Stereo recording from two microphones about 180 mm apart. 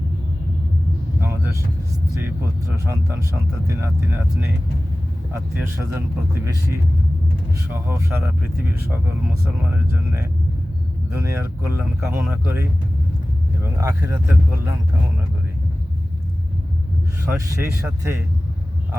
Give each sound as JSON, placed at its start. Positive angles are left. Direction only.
{"t": 1.2, "sound": "vehicle", "side_deg": -15}
{"t": 2.2, "sound": "speech", "side_deg": -15}
{"t": 17.2, "sound": "speech", "side_deg": -15}